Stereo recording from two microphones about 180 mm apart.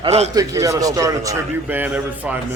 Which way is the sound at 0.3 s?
15° right (ahead or behind).